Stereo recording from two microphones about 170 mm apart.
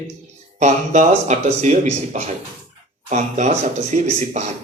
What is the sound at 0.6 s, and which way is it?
A man's voice, 45° right (ahead or behind).